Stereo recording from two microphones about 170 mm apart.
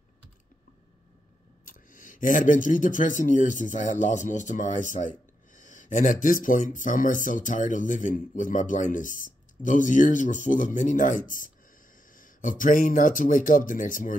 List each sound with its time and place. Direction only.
1.7 s speech: 50° left (ahead or behind)